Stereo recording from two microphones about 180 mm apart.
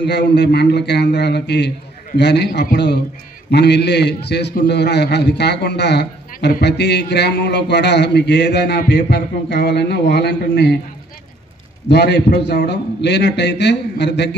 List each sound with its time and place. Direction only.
0.0 s a man's voice: 70° left (ahead or behind)
11.9 s a man's voice: 70° left (ahead or behind)